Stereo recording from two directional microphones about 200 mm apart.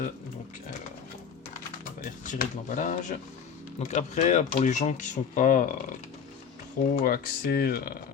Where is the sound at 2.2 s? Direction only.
40° left (ahead or behind).